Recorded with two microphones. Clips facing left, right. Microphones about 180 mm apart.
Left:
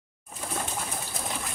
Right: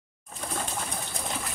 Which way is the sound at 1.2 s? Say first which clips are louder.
Even; centre (ahead or behind).